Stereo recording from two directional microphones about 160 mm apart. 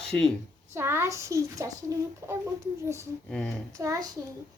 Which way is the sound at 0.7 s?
15° right (ahead or behind).